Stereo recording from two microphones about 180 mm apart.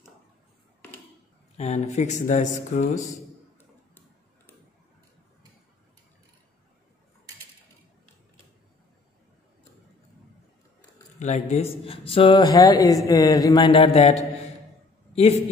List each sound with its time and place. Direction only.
1.6 s speech: 35° left (ahead or behind)
11.1 s speech: 40° left (ahead or behind); by 13.7 s 20° left (ahead or behind)
13.7 s speech: 30° left (ahead or behind)